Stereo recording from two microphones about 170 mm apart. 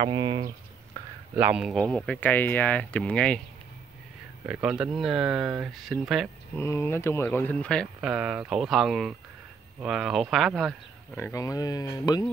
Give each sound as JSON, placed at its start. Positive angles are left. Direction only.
{"t": 0.0, "sound": "speech", "side_deg": -25}
{"t": 1.0, "sound": "a sound", "side_deg": -20}
{"t": 1.3, "sound": "speech", "side_deg": -10}
{"t": 4.5, "sound": "speech", "side_deg": -5}
{"t": 6.5, "sound": "speech", "side_deg": 15}
{"t": 11.1, "sound": "speech", "side_deg": 15}